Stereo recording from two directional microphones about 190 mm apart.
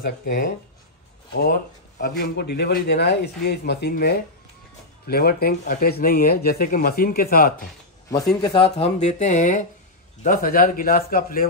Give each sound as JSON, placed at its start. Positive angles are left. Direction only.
{"t": 0.0, "sound": "speech", "side_deg": 50}
{"t": 8.4, "sound": "speech", "side_deg": 20}
{"t": 8.7, "sound": "speech", "side_deg": 35}